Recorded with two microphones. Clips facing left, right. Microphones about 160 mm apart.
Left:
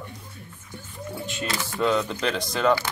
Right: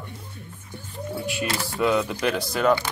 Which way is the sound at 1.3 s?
10° right (ahead or behind).